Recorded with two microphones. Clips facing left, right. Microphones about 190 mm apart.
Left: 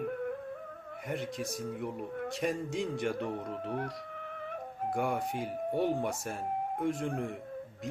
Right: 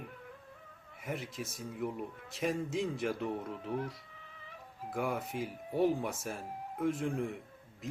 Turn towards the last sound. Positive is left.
turn(degrees=0)  # may be behind; listen again after turning